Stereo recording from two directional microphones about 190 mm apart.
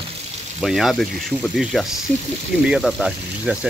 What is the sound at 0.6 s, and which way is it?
Speech, centre (ahead or behind).